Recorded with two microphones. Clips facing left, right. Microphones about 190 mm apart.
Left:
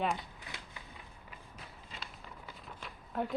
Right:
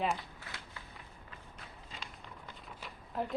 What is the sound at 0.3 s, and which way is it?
Shuffling cards, 20° left (ahead or behind).